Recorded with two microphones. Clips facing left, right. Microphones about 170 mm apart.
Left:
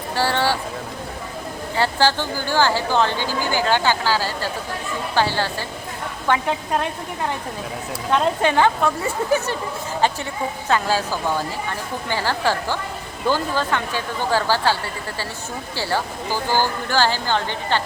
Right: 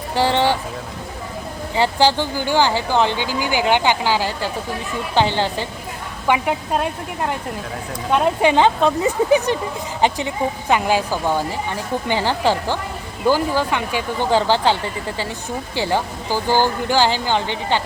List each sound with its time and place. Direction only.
0.2 s speech: 20° right (ahead or behind)
1.7 s a woman's voice: 15° right (ahead or behind)
8.1 s speech: 15° right (ahead or behind)